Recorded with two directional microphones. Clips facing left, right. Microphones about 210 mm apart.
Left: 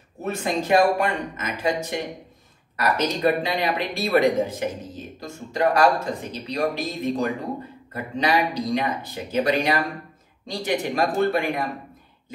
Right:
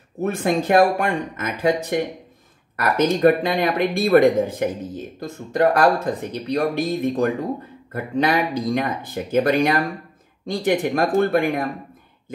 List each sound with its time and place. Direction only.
0.2 s speech: 50° right (ahead or behind)